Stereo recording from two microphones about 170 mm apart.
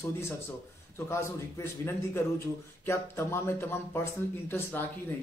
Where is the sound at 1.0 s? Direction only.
15° left (ahead or behind).